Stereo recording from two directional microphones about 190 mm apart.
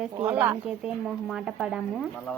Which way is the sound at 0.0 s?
10° right (ahead or behind).